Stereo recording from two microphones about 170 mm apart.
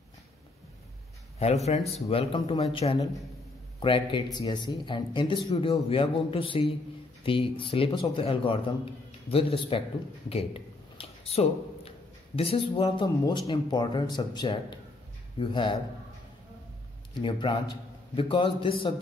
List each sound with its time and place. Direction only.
1.4 s a man's voice: 40° left (ahead or behind)
10.3 s a sound: 35° left (ahead or behind)
12.4 s a man's voice: 35° left (ahead or behind)
17.1 s a man's voice: 30° left (ahead or behind)